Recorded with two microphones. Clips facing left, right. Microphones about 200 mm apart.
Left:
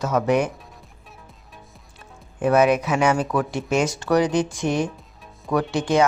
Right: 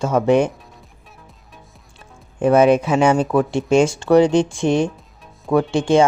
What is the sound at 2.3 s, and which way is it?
Speech, 25° right (ahead or behind).